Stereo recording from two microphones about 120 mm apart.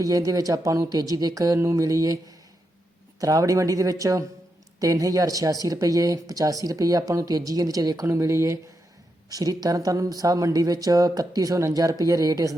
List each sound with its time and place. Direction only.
0.0 s speech: 30° right (ahead or behind)
3.2 s speech: 30° right (ahead or behind)